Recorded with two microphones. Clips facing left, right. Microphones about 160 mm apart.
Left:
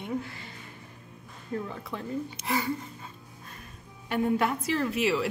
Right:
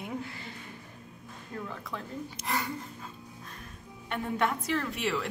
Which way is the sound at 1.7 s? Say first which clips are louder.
Left 5 dB; centre (ahead or behind).